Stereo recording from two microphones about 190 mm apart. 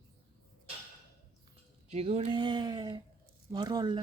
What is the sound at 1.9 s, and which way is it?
Speech, 35° right (ahead or behind).